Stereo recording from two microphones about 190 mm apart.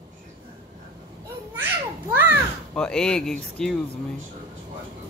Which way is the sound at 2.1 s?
10° right (ahead or behind).